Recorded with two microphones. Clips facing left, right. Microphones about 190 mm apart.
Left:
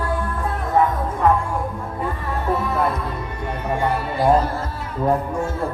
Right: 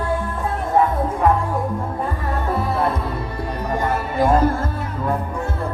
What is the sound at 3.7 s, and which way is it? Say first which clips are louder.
Music: left 1 dB; 45° right (ahead or behind).